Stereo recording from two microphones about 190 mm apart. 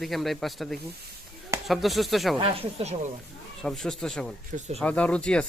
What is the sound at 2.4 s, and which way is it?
Speech, 30° right (ahead or behind).